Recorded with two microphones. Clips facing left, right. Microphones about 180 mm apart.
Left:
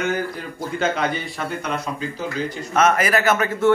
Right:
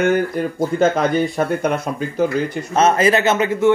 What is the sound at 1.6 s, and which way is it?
Speech, 50° right (ahead or behind).